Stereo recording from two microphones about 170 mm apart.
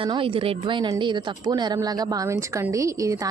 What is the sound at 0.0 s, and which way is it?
A woman's voice, 30° right (ahead or behind).